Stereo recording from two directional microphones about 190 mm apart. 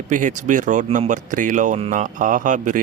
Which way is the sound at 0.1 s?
40° right (ahead or behind).